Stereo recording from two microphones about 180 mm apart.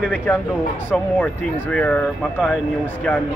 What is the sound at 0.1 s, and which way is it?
Speech, 10° left (ahead or behind).